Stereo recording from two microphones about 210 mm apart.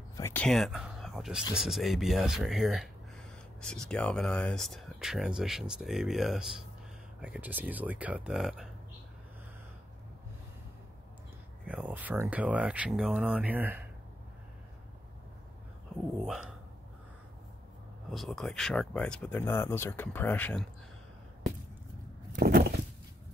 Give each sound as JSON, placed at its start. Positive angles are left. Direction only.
{"t": 0.2, "sound": "speech", "side_deg": 5}
{"t": 11.6, "sound": "speech", "side_deg": -5}
{"t": 16.3, "sound": "speech", "side_deg": -5}
{"t": 18.1, "sound": "speech", "side_deg": 0}
{"t": 22.3, "sound": "a sound", "side_deg": -45}